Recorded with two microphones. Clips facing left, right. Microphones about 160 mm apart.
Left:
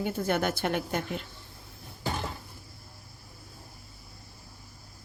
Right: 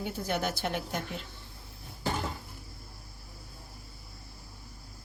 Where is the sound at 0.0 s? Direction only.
55° left (ahead or behind).